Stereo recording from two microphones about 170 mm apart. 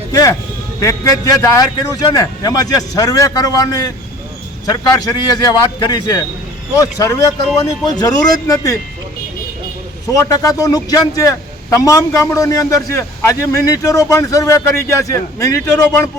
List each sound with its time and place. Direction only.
0.1 s a man's voice: 20° left (ahead or behind)
10.1 s a man's voice: 20° left (ahead or behind)